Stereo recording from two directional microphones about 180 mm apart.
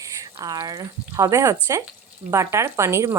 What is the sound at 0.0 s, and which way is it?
Speech, 20° right (ahead or behind).